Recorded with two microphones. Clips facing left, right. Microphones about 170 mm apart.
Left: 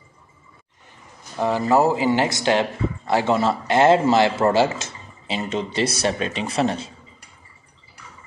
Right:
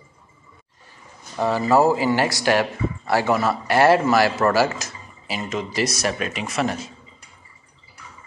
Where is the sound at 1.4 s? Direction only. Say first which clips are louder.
Even; 20° left (ahead or behind).